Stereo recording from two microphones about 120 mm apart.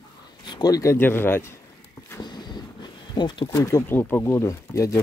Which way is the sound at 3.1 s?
40° left (ahead or behind).